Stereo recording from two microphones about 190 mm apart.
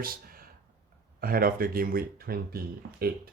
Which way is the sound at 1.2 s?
50° right (ahead or behind).